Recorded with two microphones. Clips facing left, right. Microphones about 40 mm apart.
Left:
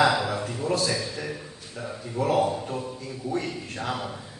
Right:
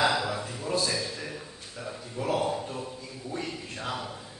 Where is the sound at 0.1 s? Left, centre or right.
Left.